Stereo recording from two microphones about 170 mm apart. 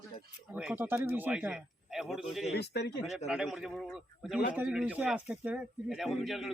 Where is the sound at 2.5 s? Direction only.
75° left (ahead or behind).